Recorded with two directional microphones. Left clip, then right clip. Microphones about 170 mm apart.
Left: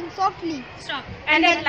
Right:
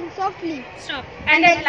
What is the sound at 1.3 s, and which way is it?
Speech, 40° right (ahead or behind).